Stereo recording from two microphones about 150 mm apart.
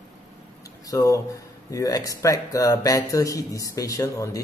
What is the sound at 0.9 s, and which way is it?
Speech, 25° left (ahead or behind).